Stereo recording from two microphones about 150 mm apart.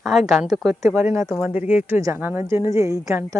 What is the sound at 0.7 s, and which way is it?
Speech, 20° right (ahead or behind).